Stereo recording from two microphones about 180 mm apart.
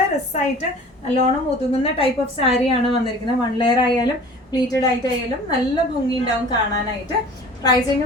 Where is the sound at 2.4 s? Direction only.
30° left (ahead or behind).